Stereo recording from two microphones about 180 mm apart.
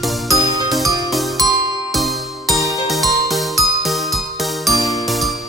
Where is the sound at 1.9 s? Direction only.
Centre (ahead or behind).